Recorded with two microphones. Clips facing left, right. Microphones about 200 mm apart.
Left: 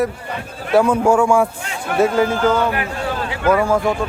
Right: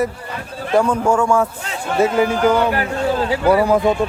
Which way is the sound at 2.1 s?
15° right (ahead or behind).